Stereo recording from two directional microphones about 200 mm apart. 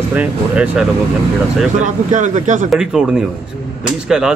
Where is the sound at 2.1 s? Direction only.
35° right (ahead or behind).